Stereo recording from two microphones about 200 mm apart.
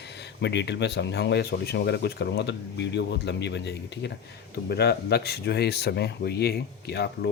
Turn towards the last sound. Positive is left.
turn(degrees=55)  # may be behind; listen again after turning